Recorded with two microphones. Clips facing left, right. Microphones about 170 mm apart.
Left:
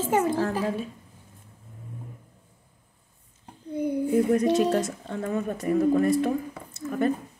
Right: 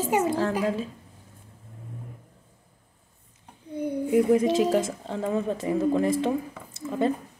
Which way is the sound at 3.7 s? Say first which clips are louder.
Left 2 dB; 10° left (ahead or behind).